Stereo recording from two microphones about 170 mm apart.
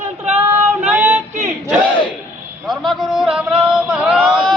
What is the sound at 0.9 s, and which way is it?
Female singing, 10° right (ahead or behind).